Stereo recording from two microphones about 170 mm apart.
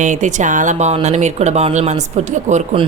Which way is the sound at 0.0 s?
45° right (ahead or behind).